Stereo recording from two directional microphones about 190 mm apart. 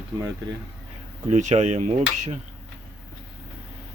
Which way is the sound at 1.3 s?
40° right (ahead or behind).